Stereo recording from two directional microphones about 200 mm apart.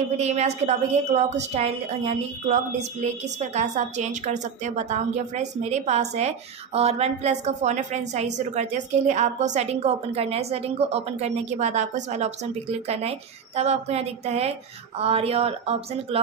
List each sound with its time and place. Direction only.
0.2 s a woman's voice: 35° right (ahead or behind)